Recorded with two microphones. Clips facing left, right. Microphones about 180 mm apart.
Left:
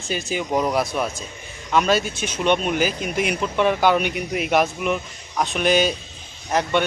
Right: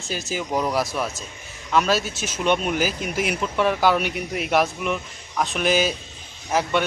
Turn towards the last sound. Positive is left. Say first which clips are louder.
# left 1 dB
turn(degrees=-5)  # may be behind; listen again after turning